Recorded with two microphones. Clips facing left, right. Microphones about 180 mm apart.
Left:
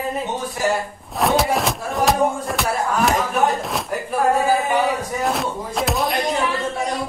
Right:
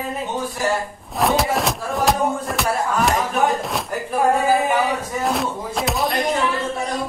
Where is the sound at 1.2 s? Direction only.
Centre (ahead or behind).